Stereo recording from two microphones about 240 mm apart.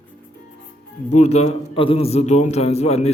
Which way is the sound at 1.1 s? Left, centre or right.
Left.